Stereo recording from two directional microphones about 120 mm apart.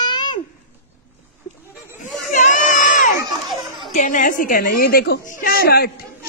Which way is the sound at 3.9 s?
90° left.